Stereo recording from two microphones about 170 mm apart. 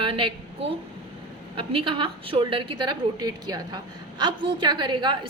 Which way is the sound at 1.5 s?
30° right (ahead or behind).